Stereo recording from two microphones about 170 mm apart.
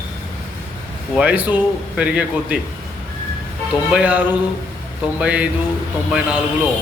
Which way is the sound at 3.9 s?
10° right (ahead or behind).